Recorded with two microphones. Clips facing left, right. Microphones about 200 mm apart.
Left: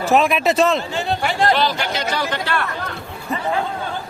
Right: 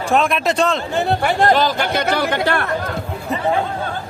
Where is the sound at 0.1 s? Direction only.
Centre (ahead or behind).